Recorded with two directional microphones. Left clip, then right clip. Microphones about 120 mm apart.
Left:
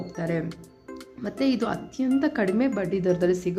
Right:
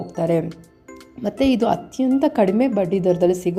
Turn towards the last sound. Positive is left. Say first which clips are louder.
# right 6 dB
turn(degrees=-25)  # may be behind; listen again after turning